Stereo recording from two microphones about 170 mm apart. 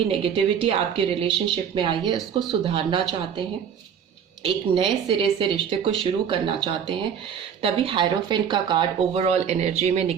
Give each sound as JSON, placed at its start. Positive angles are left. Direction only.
{"t": 0.1, "sound": "speech", "side_deg": -35}
{"t": 4.4, "sound": "speech", "side_deg": -35}
{"t": 9.2, "sound": "speech", "side_deg": -40}